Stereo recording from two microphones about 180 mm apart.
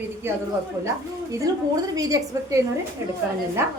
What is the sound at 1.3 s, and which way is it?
A woman's voice, 20° right (ahead or behind).